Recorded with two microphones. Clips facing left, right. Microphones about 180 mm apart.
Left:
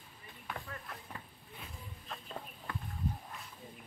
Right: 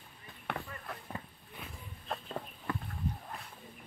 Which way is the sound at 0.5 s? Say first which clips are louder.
Right 5 dB; 65° right (ahead or behind).